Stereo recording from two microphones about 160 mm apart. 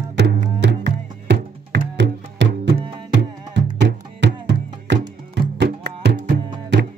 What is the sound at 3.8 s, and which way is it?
Music, 90° right.